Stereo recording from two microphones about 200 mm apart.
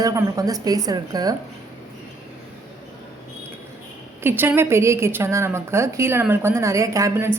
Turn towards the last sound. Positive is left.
turn(degrees=-15)  # may be behind; listen again after turning